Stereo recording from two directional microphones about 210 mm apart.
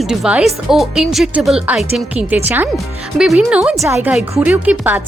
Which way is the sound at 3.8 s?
15° right (ahead or behind).